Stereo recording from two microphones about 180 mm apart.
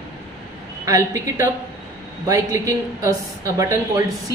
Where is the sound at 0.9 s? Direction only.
15° right (ahead or behind).